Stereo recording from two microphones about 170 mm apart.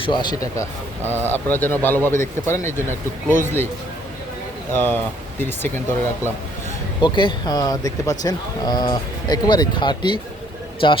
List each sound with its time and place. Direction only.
0.0 s speech: 25° left (ahead or behind)
1.0 s speech: 15° right (ahead or behind)
1.3 s speech: 10° left (ahead or behind)
4.7 s speech: 10° left (ahead or behind)
7.0 s speech: 25° left (ahead or behind)